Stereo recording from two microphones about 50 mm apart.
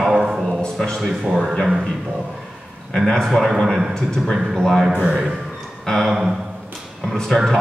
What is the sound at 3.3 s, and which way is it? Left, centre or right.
A man's voice, centre.